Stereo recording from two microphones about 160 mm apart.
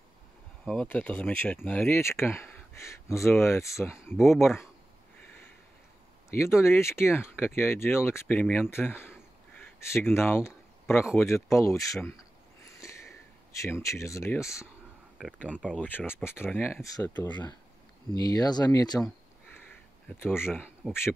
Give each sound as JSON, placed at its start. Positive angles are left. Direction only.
{"t": 0.7, "sound": "speech", "side_deg": 5}
{"t": 6.3, "sound": "speech", "side_deg": 15}
{"t": 15.1, "sound": "speech", "side_deg": 0}
{"t": 15.6, "sound": "speech", "side_deg": 10}